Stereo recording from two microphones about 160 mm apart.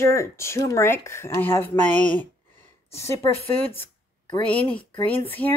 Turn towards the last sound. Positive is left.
turn(degrees=10)  # may be behind; listen again after turning